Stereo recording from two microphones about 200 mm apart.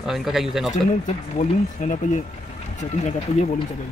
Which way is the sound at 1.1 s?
35° left (ahead or behind).